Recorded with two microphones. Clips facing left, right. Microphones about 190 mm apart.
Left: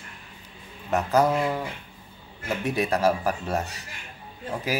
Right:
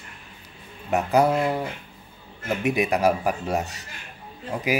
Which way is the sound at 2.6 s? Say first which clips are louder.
Right 2 dB; 15° right (ahead or behind).